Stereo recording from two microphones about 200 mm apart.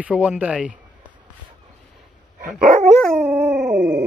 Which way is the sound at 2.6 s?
35° right (ahead or behind).